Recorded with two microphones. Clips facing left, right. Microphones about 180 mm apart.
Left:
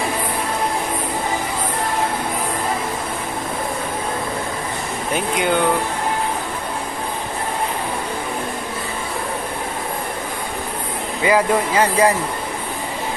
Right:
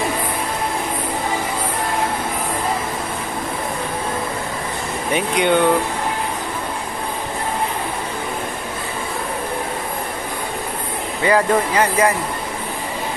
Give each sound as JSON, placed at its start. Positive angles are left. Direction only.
{"t": 5.1, "sound": "speech", "side_deg": 0}
{"t": 11.2, "sound": "speech", "side_deg": 15}
{"t": 11.8, "sound": "speech", "side_deg": 35}